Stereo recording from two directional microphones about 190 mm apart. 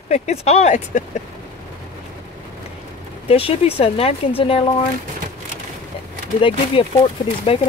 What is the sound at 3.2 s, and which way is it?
Speech, 30° left (ahead or behind).